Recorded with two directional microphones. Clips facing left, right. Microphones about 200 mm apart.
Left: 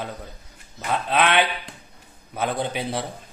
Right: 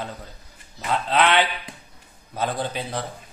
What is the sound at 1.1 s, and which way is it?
A man's voice, 10° left (ahead or behind).